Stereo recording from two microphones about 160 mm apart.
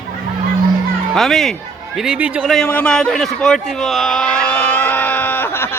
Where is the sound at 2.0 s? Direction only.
5° right (ahead or behind).